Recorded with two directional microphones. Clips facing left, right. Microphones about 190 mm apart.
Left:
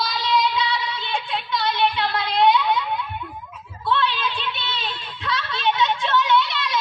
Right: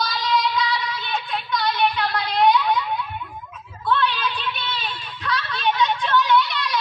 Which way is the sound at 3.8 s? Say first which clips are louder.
Right 1 dB; 25° left (ahead or behind).